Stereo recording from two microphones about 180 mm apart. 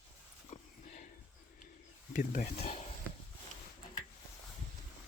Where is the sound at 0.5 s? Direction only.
45° left (ahead or behind).